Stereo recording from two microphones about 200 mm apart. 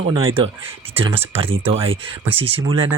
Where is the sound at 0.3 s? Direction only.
25° right (ahead or behind).